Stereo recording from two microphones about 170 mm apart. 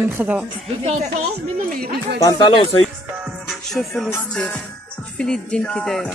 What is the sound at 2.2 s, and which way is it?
Speech, 30° left (ahead or behind).